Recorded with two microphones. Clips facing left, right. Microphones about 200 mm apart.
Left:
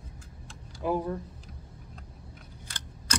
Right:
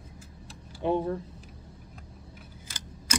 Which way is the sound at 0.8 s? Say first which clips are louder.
Right 2 dB; 25° right (ahead or behind).